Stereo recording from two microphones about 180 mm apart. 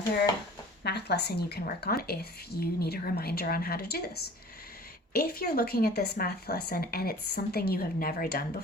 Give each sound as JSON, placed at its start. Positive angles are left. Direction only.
{"t": 0.9, "sound": "speech", "side_deg": 65}